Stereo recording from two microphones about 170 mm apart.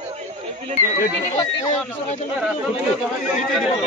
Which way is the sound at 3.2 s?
5° right (ahead or behind).